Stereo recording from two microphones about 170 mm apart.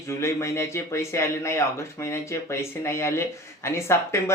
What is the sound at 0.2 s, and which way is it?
Speech, 15° left (ahead or behind).